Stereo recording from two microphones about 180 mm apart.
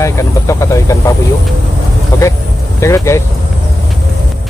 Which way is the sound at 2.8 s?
15° left (ahead or behind).